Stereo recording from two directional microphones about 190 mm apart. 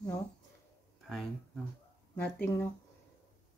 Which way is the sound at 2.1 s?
10° left (ahead or behind).